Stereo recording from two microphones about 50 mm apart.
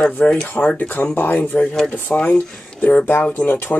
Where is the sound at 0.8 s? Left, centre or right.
Left.